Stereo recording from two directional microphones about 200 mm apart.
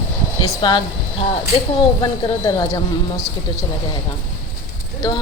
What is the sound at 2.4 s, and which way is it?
Speech, 15° left (ahead or behind).